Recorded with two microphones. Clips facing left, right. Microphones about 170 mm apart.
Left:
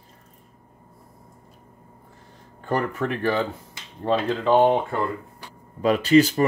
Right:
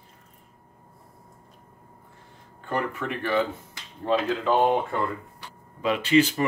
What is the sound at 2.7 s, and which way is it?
Speech, 40° left (ahead or behind).